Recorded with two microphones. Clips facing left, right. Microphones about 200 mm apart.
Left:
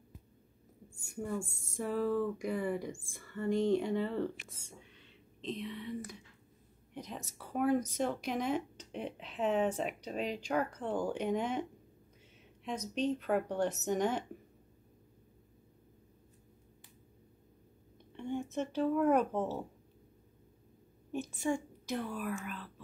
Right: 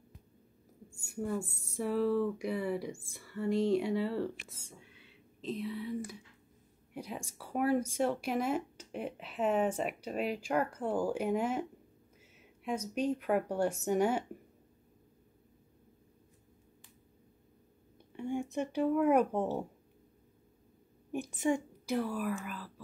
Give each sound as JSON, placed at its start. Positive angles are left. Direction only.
{"t": 1.0, "sound": "a woman's voice", "side_deg": -5}
{"t": 4.6, "sound": "whispering", "side_deg": -10}
{"t": 6.9, "sound": "speech", "side_deg": -10}
{"t": 18.1, "sound": "speech", "side_deg": -10}
{"t": 21.1, "sound": "a woman's voice", "side_deg": -15}
{"t": 21.8, "sound": "speech", "side_deg": -5}